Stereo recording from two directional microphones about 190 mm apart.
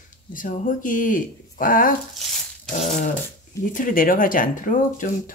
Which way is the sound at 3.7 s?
45° left (ahead or behind).